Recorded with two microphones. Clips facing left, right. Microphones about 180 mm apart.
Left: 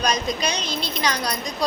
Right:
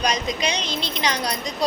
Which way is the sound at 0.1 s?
20° right (ahead or behind).